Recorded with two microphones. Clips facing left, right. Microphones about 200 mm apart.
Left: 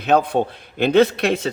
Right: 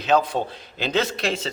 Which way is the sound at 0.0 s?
60° left (ahead or behind).